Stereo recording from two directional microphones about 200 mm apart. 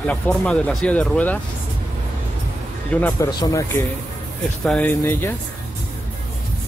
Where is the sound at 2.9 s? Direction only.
10° left (ahead or behind).